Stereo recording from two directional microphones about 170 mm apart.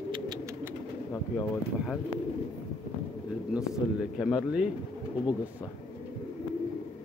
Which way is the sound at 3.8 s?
5° right (ahead or behind).